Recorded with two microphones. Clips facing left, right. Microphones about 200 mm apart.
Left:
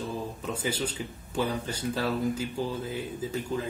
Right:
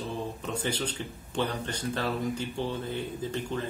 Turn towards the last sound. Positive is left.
turn(degrees=5)  # may be behind; listen again after turning